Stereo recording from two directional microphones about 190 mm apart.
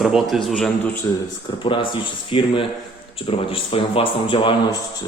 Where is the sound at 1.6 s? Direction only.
25° left (ahead or behind).